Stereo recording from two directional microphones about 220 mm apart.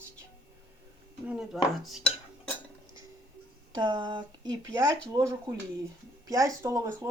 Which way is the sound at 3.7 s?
20° right (ahead or behind).